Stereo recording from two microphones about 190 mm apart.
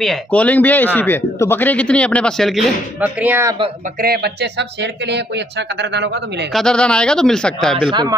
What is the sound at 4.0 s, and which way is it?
Speech, 55° right (ahead or behind).